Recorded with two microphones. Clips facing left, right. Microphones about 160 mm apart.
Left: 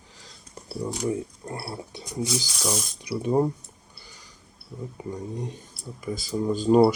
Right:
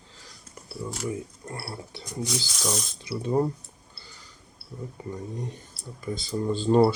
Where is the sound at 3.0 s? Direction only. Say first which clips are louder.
Left 2 dB; 20° left (ahead or behind).